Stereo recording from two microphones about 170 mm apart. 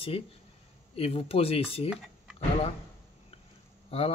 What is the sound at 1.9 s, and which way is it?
Typing, 5° right (ahead or behind).